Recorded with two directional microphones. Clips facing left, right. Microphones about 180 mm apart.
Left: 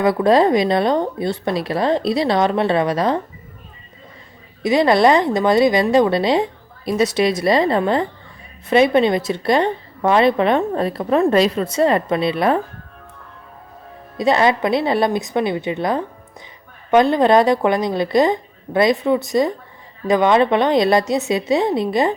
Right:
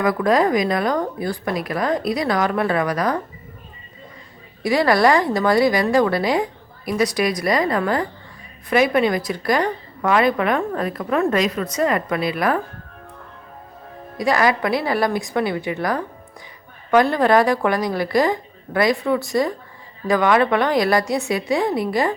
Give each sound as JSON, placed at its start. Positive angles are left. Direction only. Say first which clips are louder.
{"t": 0.0, "sound": "a woman's voice", "louder": "left 3 dB", "side_deg": 30}
{"t": 4.6, "sound": "a woman's voice", "louder": "left 3 dB", "side_deg": 20}
{"t": 14.2, "sound": "a woman's voice", "louder": "left 3 dB", "side_deg": 25}